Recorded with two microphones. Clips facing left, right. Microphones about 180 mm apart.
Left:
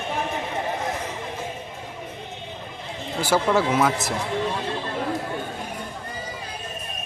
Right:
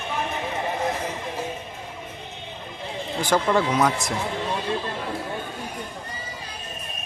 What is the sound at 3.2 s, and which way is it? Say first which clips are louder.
Speech: left 1 dB; 5° left (ahead or behind).